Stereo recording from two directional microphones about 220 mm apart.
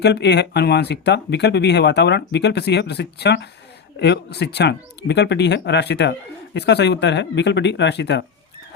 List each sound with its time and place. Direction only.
0.0 s speech: 50° left (ahead or behind)